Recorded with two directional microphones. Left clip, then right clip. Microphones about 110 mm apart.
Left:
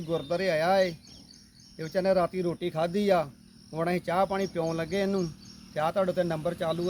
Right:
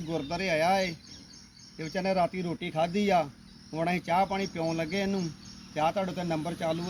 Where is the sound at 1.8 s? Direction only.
65° left (ahead or behind); by 5.2 s 90° left.